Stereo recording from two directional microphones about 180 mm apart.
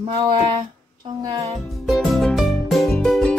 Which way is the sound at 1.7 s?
Centre (ahead or behind).